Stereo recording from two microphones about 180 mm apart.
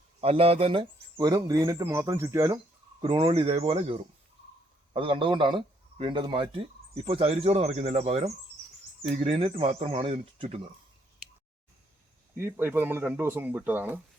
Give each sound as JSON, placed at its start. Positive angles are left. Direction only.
{"t": 0.2, "sound": "speech", "side_deg": -35}
{"t": 3.0, "sound": "speech", "side_deg": -30}
{"t": 12.4, "sound": "speech", "side_deg": -10}